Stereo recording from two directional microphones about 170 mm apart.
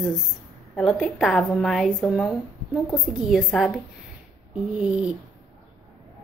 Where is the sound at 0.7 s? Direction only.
Centre (ahead or behind).